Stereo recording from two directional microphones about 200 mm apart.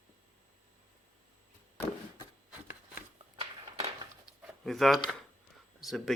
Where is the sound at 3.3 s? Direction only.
25° right (ahead or behind).